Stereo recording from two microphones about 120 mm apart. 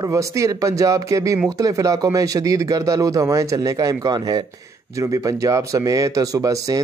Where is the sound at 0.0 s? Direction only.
25° right (ahead or behind).